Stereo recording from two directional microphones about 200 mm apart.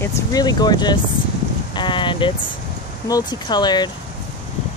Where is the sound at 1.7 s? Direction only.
25° left (ahead or behind).